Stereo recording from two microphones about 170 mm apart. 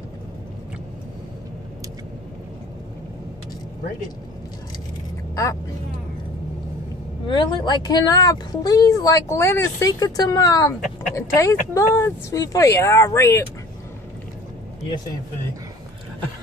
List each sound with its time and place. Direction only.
5.3 s speech: 20° left (ahead or behind)
7.2 s speech: 25° left (ahead or behind)